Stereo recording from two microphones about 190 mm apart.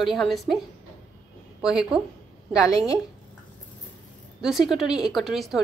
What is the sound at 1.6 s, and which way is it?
A woman's voice, 5° right (ahead or behind).